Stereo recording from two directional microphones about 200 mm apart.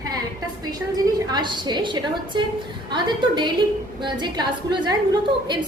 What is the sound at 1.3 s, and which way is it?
A woman's voice, 20° right (ahead or behind).